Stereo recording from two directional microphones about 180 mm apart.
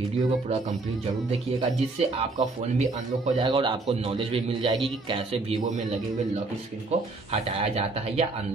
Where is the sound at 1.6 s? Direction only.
40° right (ahead or behind).